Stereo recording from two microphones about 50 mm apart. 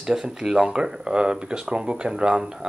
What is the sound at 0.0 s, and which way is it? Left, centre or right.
Speech, centre.